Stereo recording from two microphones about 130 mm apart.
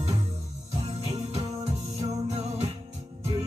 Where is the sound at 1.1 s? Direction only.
55° right (ahead or behind).